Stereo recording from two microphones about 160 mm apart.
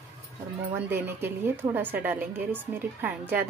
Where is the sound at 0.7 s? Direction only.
15° right (ahead or behind).